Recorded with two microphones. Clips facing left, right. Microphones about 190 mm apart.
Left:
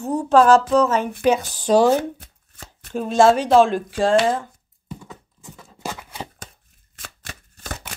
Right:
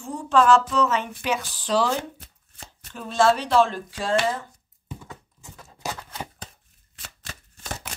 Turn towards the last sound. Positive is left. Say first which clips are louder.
# left 2 dB
turn(degrees=50)  # may be behind; listen again after turning